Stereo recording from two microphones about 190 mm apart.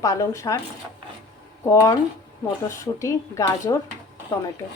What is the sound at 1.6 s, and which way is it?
Speech, 15° left (ahead or behind).